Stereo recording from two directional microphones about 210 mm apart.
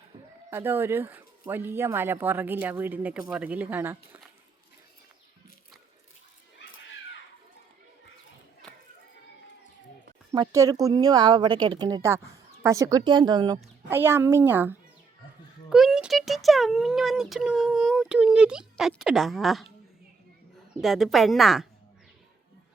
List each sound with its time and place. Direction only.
0.5 s speech: 10° right (ahead or behind)
10.3 s a woman's voice: 20° right (ahead or behind); by 19.7 s centre (ahead or behind)
20.8 s speech: centre (ahead or behind)